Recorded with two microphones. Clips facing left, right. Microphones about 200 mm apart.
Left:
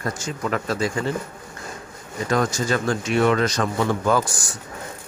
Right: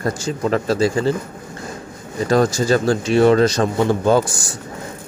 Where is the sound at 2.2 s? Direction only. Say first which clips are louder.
Right 6 dB; 35° right (ahead or behind).